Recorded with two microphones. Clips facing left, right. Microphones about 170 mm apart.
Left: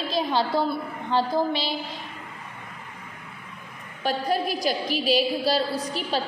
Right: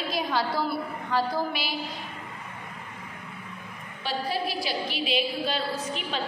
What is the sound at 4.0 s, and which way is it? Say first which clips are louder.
A woman's voice: left 5 dB; 45° left (ahead or behind).